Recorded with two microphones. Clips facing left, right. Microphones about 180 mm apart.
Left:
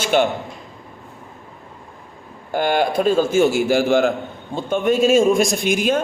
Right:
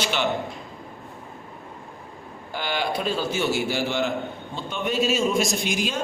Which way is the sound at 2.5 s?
50° left (ahead or behind).